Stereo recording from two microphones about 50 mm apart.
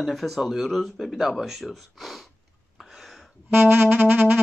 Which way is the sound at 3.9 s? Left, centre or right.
Right.